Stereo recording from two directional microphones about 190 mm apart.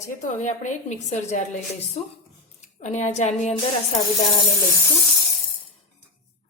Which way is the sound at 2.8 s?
35° left (ahead or behind).